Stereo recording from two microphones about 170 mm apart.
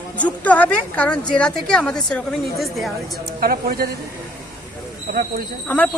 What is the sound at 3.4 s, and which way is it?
Speech, 60° right (ahead or behind).